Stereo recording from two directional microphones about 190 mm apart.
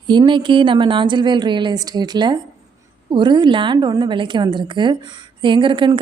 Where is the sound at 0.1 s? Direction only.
25° right (ahead or behind).